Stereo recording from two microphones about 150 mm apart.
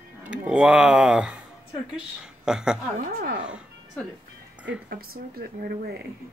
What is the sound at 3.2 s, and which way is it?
Speech, 90° right.